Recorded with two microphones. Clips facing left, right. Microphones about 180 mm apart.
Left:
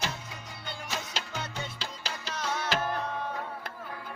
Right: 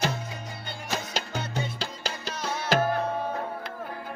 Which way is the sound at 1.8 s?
45° right (ahead or behind).